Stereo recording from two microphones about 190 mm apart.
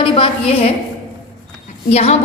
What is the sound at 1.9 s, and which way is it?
Speech, 35° left (ahead or behind).